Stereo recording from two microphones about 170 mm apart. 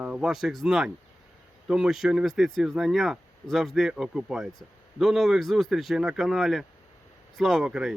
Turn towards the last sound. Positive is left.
turn(degrees=-5)  # may be behind; listen again after turning